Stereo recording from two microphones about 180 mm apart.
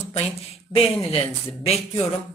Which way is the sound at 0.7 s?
30° left (ahead or behind).